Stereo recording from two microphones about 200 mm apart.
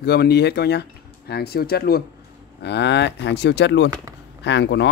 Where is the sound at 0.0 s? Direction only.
55° left (ahead or behind).